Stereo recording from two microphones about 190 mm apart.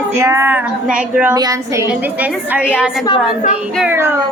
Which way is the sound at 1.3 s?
20° right (ahead or behind).